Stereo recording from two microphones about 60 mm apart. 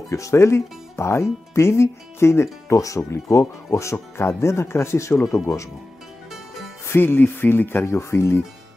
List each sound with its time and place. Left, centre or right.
0.1 s speech: left
6.3 s music: centre
6.9 s speech: left